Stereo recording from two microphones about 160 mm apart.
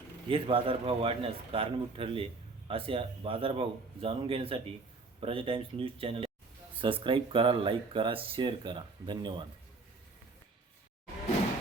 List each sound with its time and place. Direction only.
0.3 s a man's voice: 35° right (ahead or behind)